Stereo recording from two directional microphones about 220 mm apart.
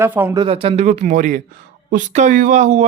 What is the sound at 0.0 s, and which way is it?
Speech, 10° right (ahead or behind).